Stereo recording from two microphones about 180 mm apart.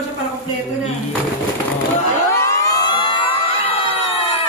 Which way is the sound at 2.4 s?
15° left (ahead or behind).